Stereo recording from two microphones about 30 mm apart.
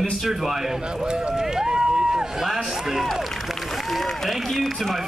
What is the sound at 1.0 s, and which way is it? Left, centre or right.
Speech, right.